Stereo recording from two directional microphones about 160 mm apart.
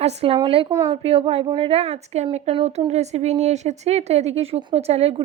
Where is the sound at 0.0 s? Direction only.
40° right (ahead or behind).